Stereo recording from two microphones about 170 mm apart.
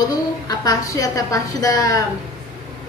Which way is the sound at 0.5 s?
20° left (ahead or behind).